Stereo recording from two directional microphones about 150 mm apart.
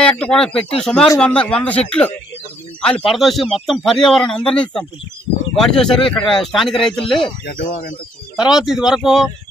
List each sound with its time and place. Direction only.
0.0 s speech: 5° left (ahead or behind)
6.7 s speech: 35° left (ahead or behind)
7.4 s speech: 90° left
8.4 s speech: 5° right (ahead or behind)